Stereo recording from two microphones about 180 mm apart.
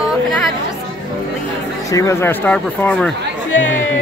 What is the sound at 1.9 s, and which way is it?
Speech, 15° left (ahead or behind).